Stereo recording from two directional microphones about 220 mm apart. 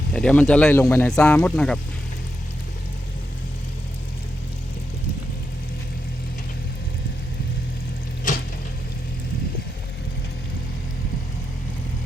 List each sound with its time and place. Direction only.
0.1 s speech: 5° left (ahead or behind)
8.3 s frying: 35° left (ahead or behind)